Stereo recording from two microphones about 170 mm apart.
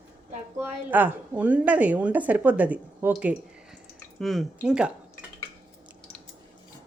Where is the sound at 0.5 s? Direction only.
10° right (ahead or behind).